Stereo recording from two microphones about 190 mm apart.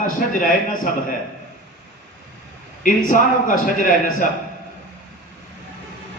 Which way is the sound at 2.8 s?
45° left (ahead or behind).